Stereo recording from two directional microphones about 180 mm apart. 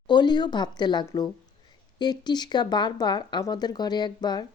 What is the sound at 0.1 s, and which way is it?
Speech, 25° left (ahead or behind).